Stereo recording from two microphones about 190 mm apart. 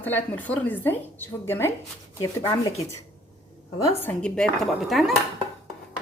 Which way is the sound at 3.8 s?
10° left (ahead or behind).